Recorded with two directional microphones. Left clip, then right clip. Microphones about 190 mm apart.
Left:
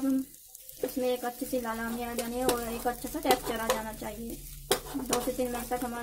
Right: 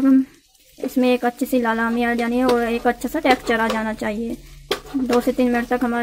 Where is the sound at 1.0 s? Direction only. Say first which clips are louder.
Right 13 dB; 40° right (ahead or behind).